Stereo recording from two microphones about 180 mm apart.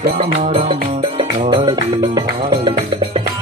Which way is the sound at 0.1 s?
35° right (ahead or behind).